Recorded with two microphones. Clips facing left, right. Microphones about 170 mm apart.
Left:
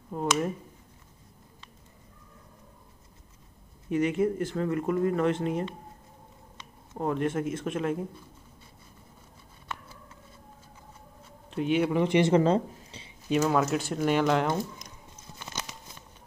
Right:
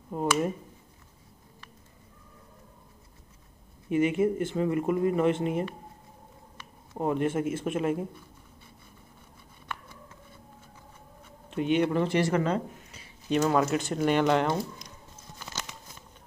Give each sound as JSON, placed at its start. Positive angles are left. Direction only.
{"t": 0.1, "sound": "speech", "side_deg": -10}
{"t": 3.9, "sound": "speech", "side_deg": -5}
{"t": 6.9, "sound": "speech", "side_deg": -10}
{"t": 11.5, "sound": "speech", "side_deg": 0}
{"t": 11.9, "sound": "speech", "side_deg": 15}
{"t": 13.3, "sound": "speech", "side_deg": 0}